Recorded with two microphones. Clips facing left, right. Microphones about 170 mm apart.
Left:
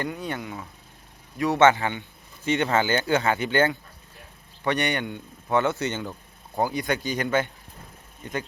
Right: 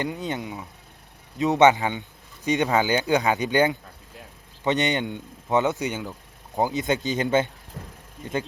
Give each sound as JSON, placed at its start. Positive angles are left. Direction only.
{"t": 0.0, "sound": "speech", "side_deg": -20}
{"t": 6.6, "sound": "speech", "side_deg": -20}
{"t": 7.8, "sound": "speech", "side_deg": -90}